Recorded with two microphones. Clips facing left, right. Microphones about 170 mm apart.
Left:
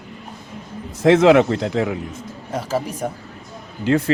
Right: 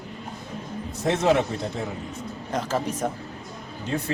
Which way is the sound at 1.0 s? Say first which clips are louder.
Left 9 dB; 90° left.